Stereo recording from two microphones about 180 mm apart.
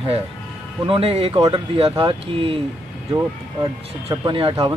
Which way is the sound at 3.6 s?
25° right (ahead or behind).